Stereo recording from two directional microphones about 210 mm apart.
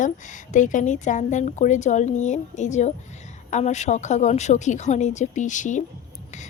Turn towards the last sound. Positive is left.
turn(degrees=35)  # may be behind; listen again after turning